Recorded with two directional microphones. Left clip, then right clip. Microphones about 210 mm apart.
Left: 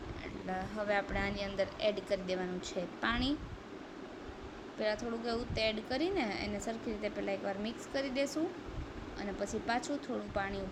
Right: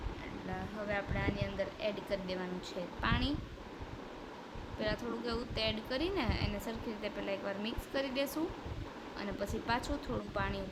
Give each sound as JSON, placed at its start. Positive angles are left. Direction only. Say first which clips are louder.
{"t": 0.9, "sound": "speech", "louder": "left 2 dB", "side_deg": 20}
{"t": 4.8, "sound": "speech", "louder": "left 2 dB", "side_deg": 10}
{"t": 9.6, "sound": "speech", "louder": "even", "side_deg": 5}